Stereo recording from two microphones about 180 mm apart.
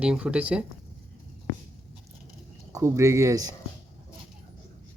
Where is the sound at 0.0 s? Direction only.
5° right (ahead or behind).